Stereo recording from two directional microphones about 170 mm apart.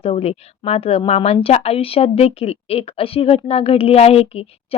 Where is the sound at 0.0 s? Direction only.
35° left (ahead or behind).